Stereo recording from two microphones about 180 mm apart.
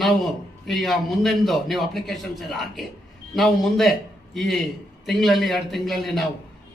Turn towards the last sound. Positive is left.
turn(degrees=0)  # may be behind; listen again after turning